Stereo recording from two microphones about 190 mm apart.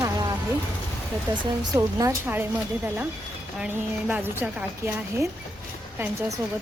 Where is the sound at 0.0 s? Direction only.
20° right (ahead or behind).